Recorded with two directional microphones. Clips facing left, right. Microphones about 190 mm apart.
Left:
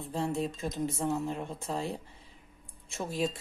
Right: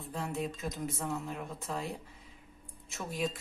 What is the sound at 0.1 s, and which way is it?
Speech, 30° left (ahead or behind).